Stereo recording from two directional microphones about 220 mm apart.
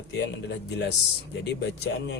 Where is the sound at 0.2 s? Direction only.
55° left (ahead or behind).